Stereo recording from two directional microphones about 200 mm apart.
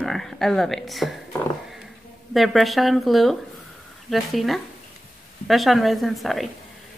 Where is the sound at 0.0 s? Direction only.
Centre (ahead or behind).